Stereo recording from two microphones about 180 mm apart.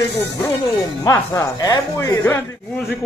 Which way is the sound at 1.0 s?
15° left (ahead or behind).